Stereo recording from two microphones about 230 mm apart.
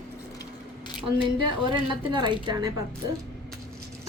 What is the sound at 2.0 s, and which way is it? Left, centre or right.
Speech, centre.